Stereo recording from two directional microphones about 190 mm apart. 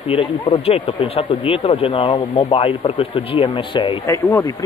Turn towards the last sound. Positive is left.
turn(degrees=15)  # may be behind; listen again after turning